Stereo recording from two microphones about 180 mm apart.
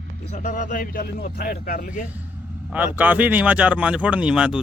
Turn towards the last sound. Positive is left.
turn(degrees=-5)  # may be behind; listen again after turning